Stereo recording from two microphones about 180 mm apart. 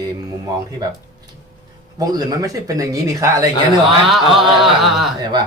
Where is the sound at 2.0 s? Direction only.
20° right (ahead or behind).